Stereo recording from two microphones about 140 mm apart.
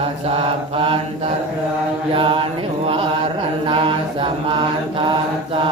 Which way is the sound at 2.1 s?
40° right (ahead or behind).